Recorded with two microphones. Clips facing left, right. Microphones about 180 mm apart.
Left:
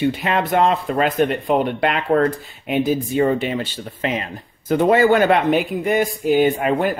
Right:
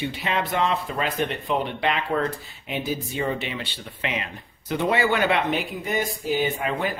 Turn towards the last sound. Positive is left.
turn(degrees=50)  # may be behind; listen again after turning